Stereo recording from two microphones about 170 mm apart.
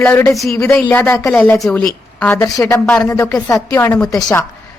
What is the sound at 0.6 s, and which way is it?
A woman's voice, 10° left (ahead or behind).